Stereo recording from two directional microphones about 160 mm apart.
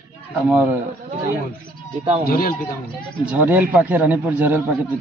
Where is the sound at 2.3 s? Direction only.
65° left (ahead or behind).